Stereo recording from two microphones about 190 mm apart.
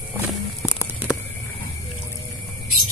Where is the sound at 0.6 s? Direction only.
10° right (ahead or behind).